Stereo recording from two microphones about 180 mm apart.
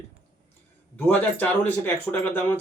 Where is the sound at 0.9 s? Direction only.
10° left (ahead or behind).